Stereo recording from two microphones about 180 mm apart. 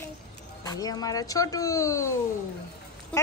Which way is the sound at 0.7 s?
20° left (ahead or behind).